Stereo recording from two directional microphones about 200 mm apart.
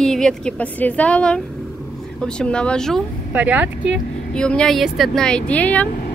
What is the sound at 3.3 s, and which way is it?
Speech, 10° right (ahead or behind).